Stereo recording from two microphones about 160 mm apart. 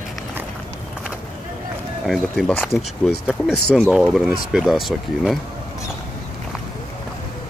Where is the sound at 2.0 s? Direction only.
Centre (ahead or behind).